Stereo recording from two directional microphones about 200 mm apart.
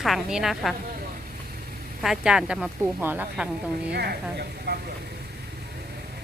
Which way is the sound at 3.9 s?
55° right (ahead or behind).